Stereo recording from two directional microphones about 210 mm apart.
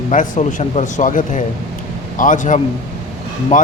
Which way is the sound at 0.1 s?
35° left (ahead or behind).